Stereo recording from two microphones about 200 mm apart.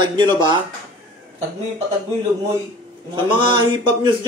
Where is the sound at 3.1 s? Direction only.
25° right (ahead or behind).